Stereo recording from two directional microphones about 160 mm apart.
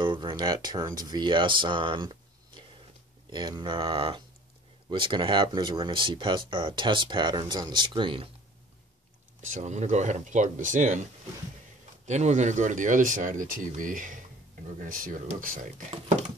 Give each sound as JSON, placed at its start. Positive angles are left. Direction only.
{"t": 0.0, "sound": "speech", "side_deg": -30}
{"t": 9.4, "sound": "speech", "side_deg": -50}
{"t": 12.1, "sound": "speech", "side_deg": -45}